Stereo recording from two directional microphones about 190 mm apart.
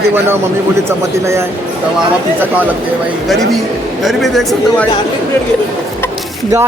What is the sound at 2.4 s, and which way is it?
Speech, 10° right (ahead or behind).